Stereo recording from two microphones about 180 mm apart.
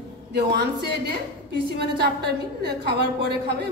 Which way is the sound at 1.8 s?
65° right (ahead or behind).